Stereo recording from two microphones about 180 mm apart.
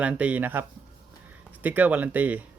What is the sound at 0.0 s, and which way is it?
Speech, 5° right (ahead or behind).